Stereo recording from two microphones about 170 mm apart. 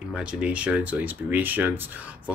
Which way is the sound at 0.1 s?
5° right (ahead or behind).